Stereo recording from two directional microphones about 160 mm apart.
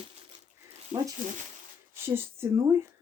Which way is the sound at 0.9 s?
35° right (ahead or behind).